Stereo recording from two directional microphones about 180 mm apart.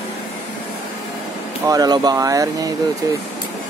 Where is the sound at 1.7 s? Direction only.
20° right (ahead or behind).